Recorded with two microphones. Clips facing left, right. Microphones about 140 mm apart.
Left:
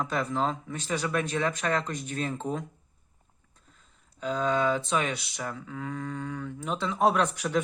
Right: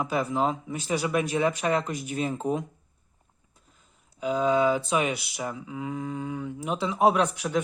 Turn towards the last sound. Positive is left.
turn(degrees=0)  # may be behind; listen again after turning